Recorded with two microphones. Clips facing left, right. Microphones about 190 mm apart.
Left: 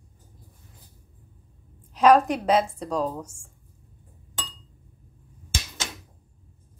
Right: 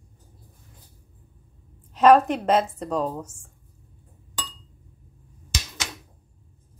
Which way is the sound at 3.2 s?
10° left (ahead or behind).